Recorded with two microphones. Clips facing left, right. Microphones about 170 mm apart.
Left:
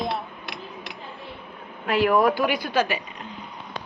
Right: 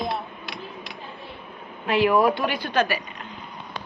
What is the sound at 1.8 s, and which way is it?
Speech, 25° right (ahead or behind).